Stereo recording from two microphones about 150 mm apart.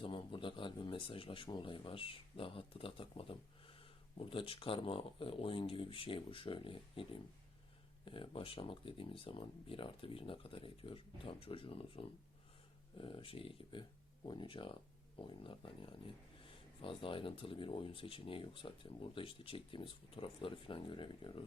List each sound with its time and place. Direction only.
0.0 s speech: 35° left (ahead or behind)